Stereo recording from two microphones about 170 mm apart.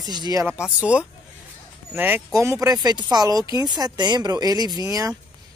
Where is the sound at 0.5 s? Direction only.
5° right (ahead or behind).